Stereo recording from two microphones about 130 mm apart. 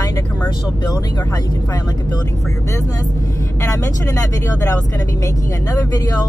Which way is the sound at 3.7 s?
25° left (ahead or behind).